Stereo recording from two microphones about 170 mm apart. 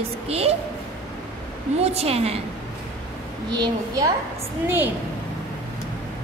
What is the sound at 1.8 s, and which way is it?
Speech, 35° right (ahead or behind).